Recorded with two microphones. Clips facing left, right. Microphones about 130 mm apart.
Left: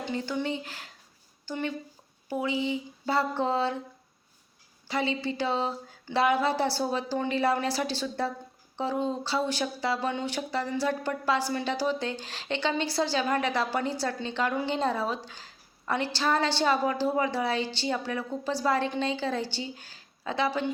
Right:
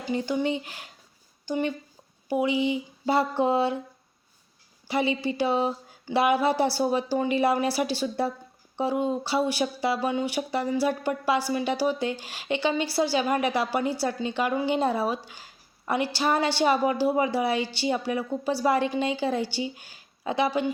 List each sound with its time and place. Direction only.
0.0 s speech: 15° right (ahead or behind)
4.9 s speech: 15° right (ahead or behind)